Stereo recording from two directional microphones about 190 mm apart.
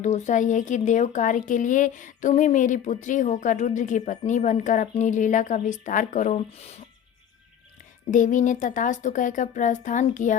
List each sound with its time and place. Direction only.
0.0 s speech: 40° left (ahead or behind)
8.1 s speech: 40° left (ahead or behind)